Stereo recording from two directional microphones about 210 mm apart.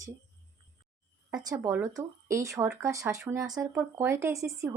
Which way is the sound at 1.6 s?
10° right (ahead or behind).